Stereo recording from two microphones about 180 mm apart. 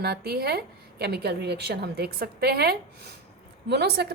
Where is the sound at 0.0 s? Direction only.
60° right (ahead or behind).